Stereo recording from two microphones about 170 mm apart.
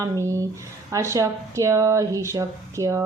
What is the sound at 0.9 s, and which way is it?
Female singing, 20° right (ahead or behind).